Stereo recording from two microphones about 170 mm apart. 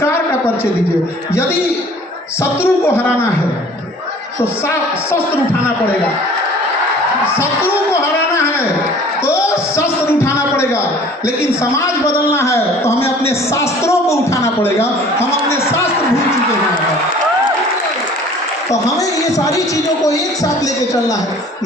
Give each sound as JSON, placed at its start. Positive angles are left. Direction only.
{"t": 2.4, "sound": "a man's voice", "side_deg": 15}
{"t": 7.3, "sound": "a sound", "side_deg": 15}
{"t": 9.2, "sound": "music", "side_deg": 15}
{"t": 12.3, "sound": "a man's voice", "side_deg": 15}
{"t": 19.5, "sound": "music", "side_deg": 20}